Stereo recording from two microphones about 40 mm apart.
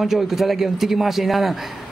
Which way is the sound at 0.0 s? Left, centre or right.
Centre.